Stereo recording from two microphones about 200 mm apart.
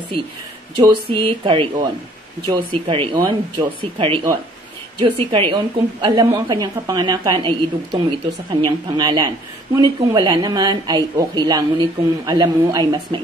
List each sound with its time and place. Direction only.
0.7 s a woman's voice: 25° right (ahead or behind)